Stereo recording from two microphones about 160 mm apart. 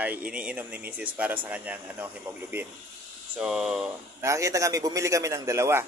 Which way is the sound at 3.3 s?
5° right (ahead or behind).